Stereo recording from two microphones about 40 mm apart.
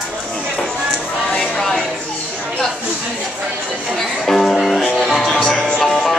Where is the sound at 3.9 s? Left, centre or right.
Centre.